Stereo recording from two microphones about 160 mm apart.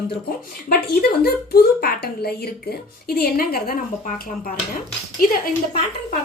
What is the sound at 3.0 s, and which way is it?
Speech, 70° left (ahead or behind).